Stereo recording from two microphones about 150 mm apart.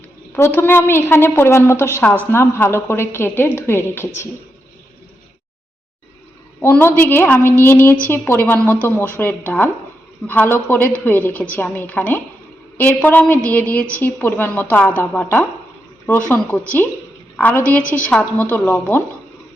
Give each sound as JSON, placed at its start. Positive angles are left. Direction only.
{"t": 0.3, "sound": "a woman's voice", "side_deg": 15}
{"t": 6.6, "sound": "a woman's voice", "side_deg": 15}